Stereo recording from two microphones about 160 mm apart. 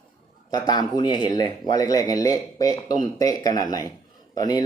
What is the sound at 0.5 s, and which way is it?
Speech, 25° left (ahead or behind).